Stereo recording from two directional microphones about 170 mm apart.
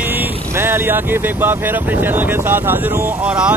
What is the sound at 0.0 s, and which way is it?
Speech, 10° right (ahead or behind).